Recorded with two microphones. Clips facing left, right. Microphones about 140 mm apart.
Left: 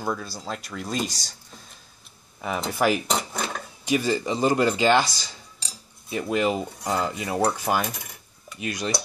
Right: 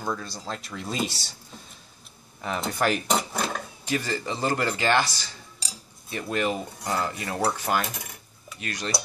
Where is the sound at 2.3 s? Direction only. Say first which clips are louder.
Left 2 dB; 5° left (ahead or behind).